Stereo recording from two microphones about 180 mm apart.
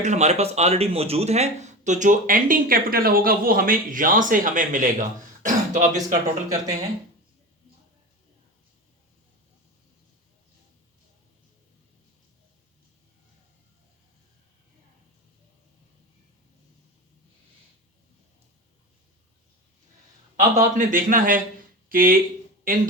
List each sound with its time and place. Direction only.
0.0 s speech: 40° right (ahead or behind)
20.6 s speech: 45° right (ahead or behind)